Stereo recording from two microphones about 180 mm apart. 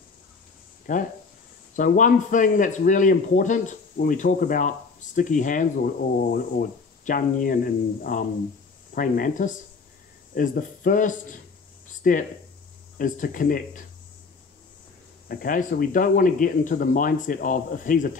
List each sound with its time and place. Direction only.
0.9 s speech: 45° left (ahead or behind)
15.2 s speech: 50° left (ahead or behind)